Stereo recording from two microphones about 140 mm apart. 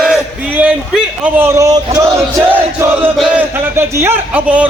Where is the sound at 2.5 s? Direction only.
15° right (ahead or behind).